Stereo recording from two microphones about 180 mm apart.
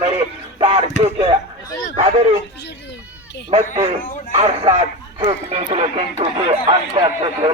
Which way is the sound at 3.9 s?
35° right (ahead or behind).